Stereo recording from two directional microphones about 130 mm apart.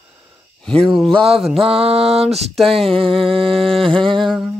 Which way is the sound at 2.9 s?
45° right (ahead or behind).